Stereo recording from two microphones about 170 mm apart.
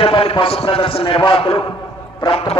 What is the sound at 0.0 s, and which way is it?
A man's voice, 35° left (ahead or behind).